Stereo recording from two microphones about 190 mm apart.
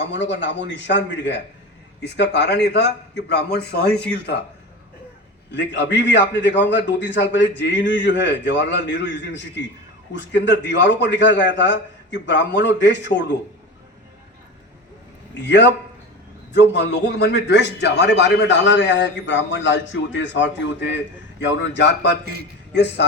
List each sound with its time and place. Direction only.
0.0 s a man's voice: 70° left (ahead or behind)
5.5 s a man's voice: 70° left (ahead or behind)
15.4 s a man's voice: 65° left (ahead or behind)
22.2 s a man's voice: 55° right (ahead or behind)
22.7 s a man's voice: 65° left (ahead or behind)